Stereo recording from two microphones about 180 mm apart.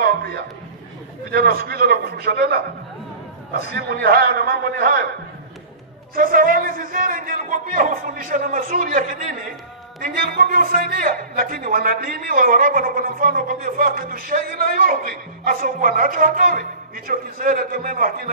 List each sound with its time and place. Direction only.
0.0 s a sound: 60° right (ahead or behind)
1.3 s a man's voice: 55° right (ahead or behind)
3.6 s a man's voice: 55° right (ahead or behind)
6.1 s speech: 50° right (ahead or behind)